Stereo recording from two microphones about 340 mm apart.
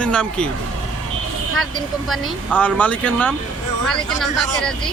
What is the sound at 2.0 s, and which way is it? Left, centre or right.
Speech, centre.